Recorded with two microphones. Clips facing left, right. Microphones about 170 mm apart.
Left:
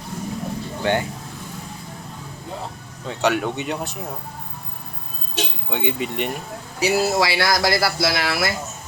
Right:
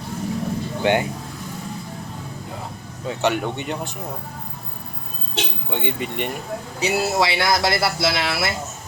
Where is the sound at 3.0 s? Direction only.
Centre (ahead or behind).